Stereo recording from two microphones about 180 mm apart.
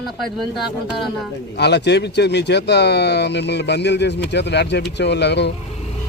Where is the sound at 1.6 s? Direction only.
70° left (ahead or behind).